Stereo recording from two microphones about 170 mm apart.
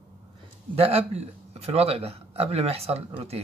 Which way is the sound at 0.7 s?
35° right (ahead or behind).